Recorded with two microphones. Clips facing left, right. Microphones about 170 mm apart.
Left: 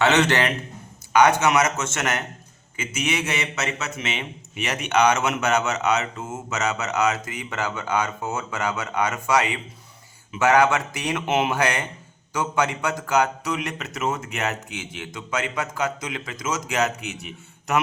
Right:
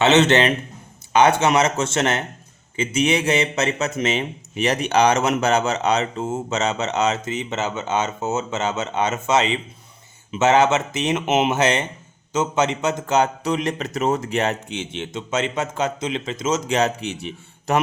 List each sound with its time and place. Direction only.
0.0 s speech: 25° right (ahead or behind)